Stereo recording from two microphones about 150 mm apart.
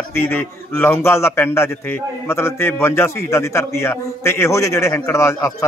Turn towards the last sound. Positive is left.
turn(degrees=20)  # may be behind; listen again after turning